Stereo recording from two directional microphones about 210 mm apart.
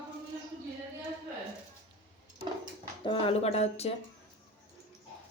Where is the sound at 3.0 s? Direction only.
25° left (ahead or behind).